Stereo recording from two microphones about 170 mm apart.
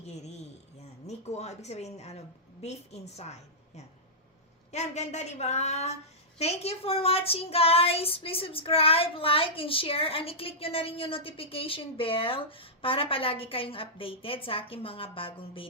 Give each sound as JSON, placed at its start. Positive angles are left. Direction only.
{"t": 0.0, "sound": "a sound", "side_deg": 40}
{"t": 1.0, "sound": "speech", "side_deg": 40}
{"t": 4.7, "sound": "speech", "side_deg": 40}